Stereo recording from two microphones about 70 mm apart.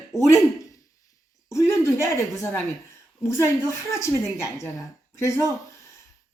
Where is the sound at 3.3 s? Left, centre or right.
Left.